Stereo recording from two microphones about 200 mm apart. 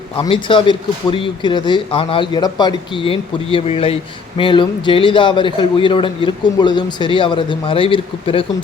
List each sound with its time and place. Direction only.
0.2 s a man's voice: 25° left (ahead or behind)